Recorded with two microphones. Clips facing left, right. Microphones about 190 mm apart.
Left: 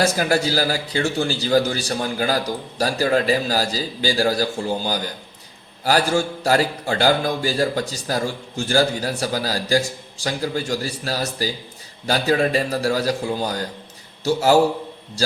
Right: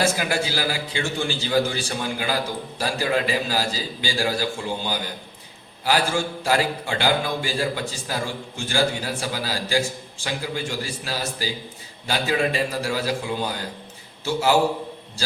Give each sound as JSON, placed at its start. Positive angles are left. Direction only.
{"t": 0.0, "sound": "a man's voice", "side_deg": 40}